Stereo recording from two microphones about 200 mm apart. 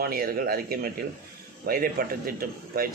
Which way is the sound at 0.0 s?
50° right (ahead or behind).